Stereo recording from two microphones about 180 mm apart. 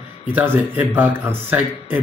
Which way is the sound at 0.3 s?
10° right (ahead or behind).